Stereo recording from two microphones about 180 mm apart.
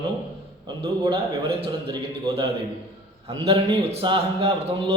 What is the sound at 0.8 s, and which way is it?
A man's voice, 25° right (ahead or behind).